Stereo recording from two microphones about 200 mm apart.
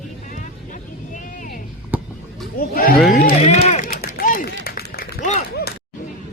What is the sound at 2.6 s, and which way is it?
Speech, 45° left (ahead or behind).